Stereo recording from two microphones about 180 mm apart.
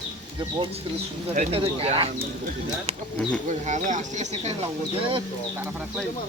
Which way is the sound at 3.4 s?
40° right (ahead or behind).